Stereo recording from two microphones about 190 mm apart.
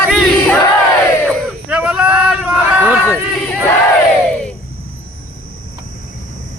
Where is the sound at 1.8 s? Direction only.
10° right (ahead or behind).